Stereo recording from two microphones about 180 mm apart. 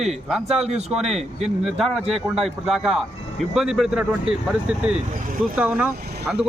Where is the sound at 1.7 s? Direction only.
Centre (ahead or behind).